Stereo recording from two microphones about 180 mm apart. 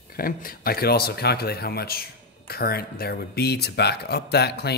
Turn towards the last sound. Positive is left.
turn(degrees=65)  # may be behind; listen again after turning